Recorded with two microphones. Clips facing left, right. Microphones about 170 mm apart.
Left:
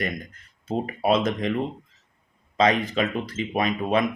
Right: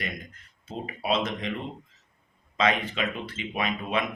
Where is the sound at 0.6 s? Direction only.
50° left (ahead or behind).